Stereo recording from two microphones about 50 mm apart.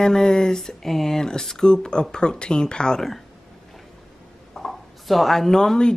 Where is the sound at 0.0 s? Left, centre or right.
Centre.